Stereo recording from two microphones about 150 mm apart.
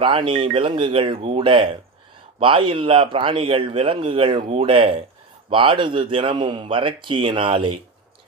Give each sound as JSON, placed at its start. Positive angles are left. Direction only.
{"t": 0.0, "sound": "speech", "side_deg": -35}